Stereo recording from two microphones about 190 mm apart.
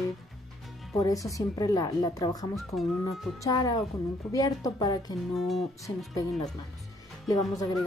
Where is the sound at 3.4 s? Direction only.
20° left (ahead or behind).